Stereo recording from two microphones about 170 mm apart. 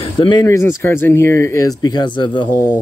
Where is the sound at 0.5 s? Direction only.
15° left (ahead or behind).